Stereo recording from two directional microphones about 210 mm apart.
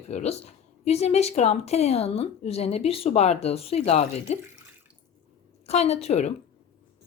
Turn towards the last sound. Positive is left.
turn(degrees=30)  # may be behind; listen again after turning